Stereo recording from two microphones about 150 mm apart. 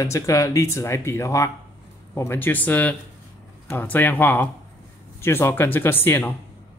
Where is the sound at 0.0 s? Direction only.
20° left (ahead or behind).